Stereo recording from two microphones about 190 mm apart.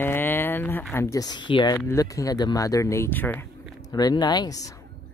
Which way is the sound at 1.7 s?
15° left (ahead or behind).